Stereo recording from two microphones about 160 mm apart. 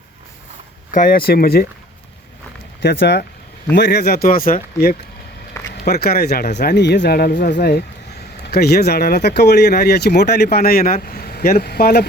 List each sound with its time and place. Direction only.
0.9 s speech: 60° left (ahead or behind)
2.8 s speech: 90° left; by 4.9 s 65° left (ahead or behind)
5.9 s speech: 80° left
6.6 s speech: 90° left; by 12.0 s 75° left (ahead or behind)